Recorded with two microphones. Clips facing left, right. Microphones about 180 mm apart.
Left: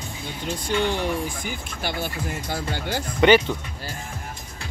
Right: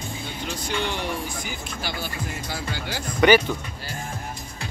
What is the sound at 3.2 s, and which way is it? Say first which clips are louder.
Speech: left 1 dB; 25° left (ahead or behind).